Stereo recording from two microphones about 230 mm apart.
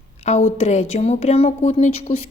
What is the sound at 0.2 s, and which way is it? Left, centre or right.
A woman's voice, left.